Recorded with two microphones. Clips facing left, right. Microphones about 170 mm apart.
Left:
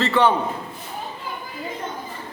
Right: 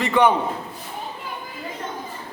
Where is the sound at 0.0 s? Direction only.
15° right (ahead or behind).